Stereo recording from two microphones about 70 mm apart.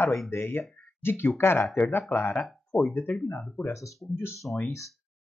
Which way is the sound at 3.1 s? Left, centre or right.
Centre.